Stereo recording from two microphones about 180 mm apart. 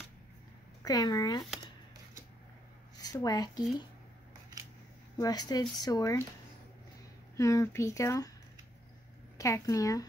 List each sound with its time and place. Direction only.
0.8 s speech: 20° left (ahead or behind)
3.0 s speech: 20° left (ahead or behind)
5.1 s speech: 20° left (ahead or behind)
7.3 s speech: 15° left (ahead or behind)
9.4 s speech: 20° left (ahead or behind)